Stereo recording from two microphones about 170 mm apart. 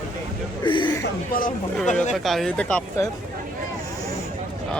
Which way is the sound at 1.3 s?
55° left (ahead or behind).